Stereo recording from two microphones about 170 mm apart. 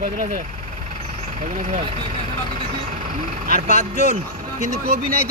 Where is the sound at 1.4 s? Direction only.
45° right (ahead or behind).